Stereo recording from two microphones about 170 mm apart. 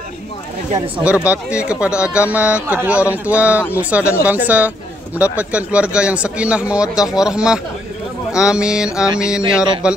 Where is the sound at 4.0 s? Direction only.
15° left (ahead or behind).